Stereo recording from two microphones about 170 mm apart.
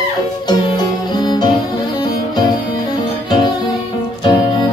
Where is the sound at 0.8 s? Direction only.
25° left (ahead or behind).